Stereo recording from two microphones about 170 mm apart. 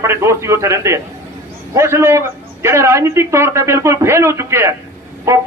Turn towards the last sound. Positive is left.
turn(degrees=-15)  # may be behind; listen again after turning